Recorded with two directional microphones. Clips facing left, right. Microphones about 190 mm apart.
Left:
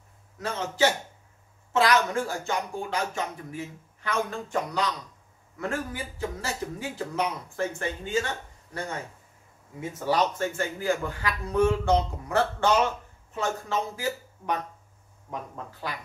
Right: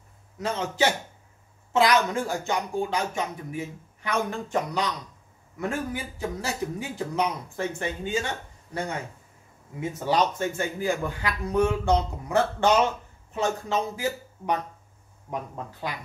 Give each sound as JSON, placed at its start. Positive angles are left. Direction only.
{"t": 0.4, "sound": "speech", "side_deg": -15}
{"t": 9.8, "sound": "speech", "side_deg": -20}